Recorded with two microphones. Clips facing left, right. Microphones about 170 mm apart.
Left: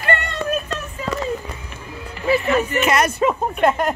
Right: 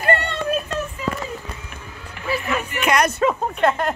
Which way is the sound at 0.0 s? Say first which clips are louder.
Right 2 dB; 35° right (ahead or behind).